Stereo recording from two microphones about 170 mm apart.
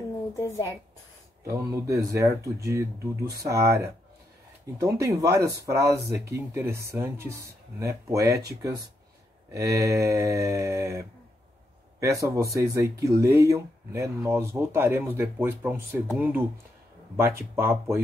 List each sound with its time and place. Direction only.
0.4 s a woman's voice: 20° left (ahead or behind)
1.4 s speech: 20° right (ahead or behind)